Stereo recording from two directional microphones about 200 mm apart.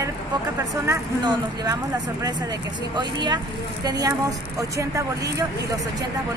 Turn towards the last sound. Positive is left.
turn(degrees=-15)  # may be behind; listen again after turning